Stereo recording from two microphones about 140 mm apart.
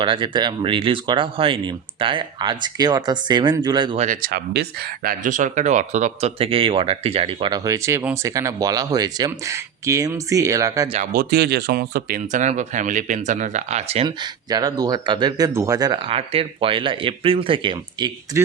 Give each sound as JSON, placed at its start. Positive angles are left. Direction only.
{"t": 0.0, "sound": "speech", "side_deg": -35}
{"t": 3.9, "sound": "speech", "side_deg": -65}
{"t": 5.0, "sound": "speech", "side_deg": -70}
{"t": 7.6, "sound": "speech", "side_deg": -20}
{"t": 11.1, "sound": "speech", "side_deg": -90}
{"t": 14.5, "sound": "speech", "side_deg": -30}
{"t": 16.0, "sound": "speech", "side_deg": -45}
{"t": 18.3, "sound": "a man's voice", "side_deg": -20}